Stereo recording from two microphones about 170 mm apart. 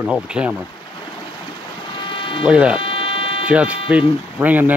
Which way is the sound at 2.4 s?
5° right (ahead or behind).